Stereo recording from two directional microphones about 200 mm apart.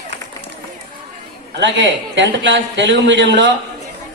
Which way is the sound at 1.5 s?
60° right (ahead or behind).